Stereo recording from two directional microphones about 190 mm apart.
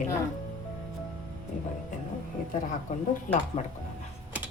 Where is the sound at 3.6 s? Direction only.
35° left (ahead or behind).